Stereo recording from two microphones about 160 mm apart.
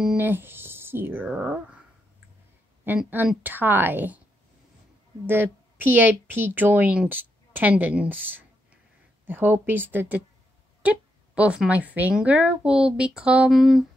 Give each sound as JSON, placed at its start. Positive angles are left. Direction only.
{"t": 0.0, "sound": "music", "side_deg": -10}
{"t": 2.8, "sound": "a woman's voice", "side_deg": -10}
{"t": 5.2, "sound": "a woman's voice", "side_deg": -15}